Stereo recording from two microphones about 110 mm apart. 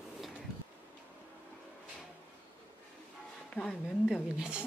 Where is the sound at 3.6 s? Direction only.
Centre (ahead or behind).